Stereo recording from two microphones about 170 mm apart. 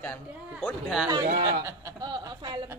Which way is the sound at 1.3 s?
20° right (ahead or behind).